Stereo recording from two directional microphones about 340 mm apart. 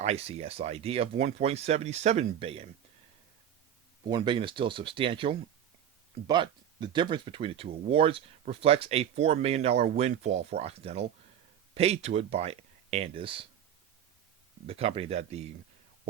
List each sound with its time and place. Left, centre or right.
0.0 s speech: centre
4.1 s speech: centre
14.7 s speech: centre